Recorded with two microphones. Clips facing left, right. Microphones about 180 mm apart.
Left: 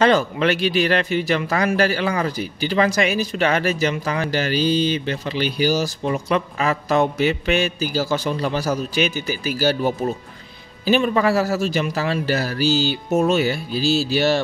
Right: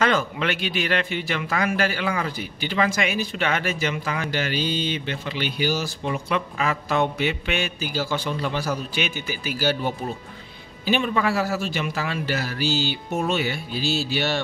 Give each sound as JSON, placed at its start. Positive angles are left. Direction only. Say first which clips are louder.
{"t": 0.0, "sound": "a man's voice", "louder": "left 6 dB", "side_deg": 35}